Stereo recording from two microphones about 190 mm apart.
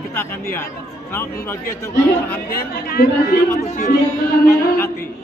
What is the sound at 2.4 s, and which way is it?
Speech, 50° left (ahead or behind).